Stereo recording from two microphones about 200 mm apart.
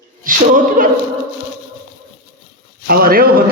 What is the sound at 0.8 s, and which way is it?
Speech, 45° right (ahead or behind).